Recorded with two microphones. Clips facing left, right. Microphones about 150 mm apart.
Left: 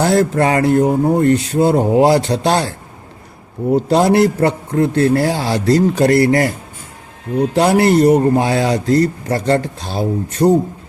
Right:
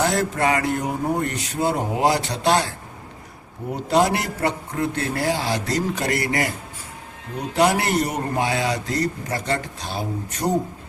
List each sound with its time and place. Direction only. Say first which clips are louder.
0.0 s a man's voice: left 7 dB; 35° left (ahead or behind)
3.8 s a man's voice: left 7 dB; 35° left (ahead or behind)
7.5 s a man's voice: left 6 dB; 35° left (ahead or behind)